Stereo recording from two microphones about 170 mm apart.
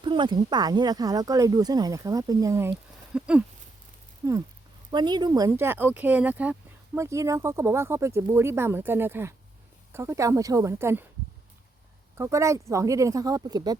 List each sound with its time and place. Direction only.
0.0 s speech: 30° right (ahead or behind)
3.2 s speech: 5° right (ahead or behind)
4.2 s speech: 20° right (ahead or behind)
12.1 s speech: 15° right (ahead or behind)